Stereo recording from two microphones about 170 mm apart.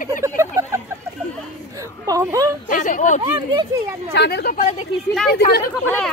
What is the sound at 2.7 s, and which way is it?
Speech, 50° left (ahead or behind).